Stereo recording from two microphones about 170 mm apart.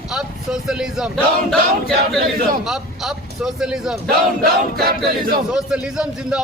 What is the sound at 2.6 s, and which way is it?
Speech, centre (ahead or behind).